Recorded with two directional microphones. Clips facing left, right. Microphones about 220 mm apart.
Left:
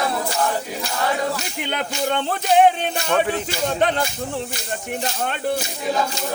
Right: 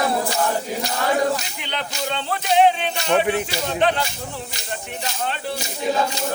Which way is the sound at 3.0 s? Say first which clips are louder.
Right 2 dB; 20° right (ahead or behind).